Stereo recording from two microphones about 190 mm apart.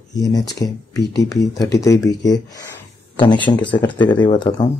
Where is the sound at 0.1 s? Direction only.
20° left (ahead or behind).